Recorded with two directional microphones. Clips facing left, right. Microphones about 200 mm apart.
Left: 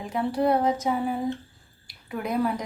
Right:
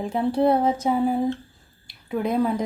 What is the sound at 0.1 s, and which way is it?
Speech, 25° right (ahead or behind).